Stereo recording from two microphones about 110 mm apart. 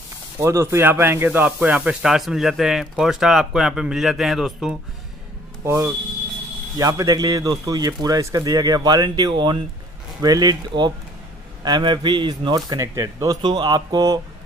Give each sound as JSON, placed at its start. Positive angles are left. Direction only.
{"t": 0.4, "sound": "speech", "side_deg": -25}
{"t": 5.6, "sound": "speech", "side_deg": -25}
{"t": 13.4, "sound": "speech", "side_deg": -45}